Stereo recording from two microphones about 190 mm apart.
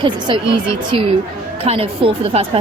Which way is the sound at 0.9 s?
30° right (ahead or behind).